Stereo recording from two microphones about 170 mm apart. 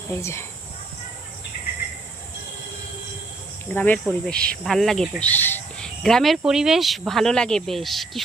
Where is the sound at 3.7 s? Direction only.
10° left (ahead or behind).